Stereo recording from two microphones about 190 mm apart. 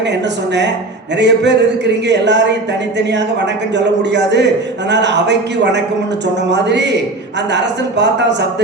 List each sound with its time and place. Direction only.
0.1 s a man's voice: 65° right (ahead or behind)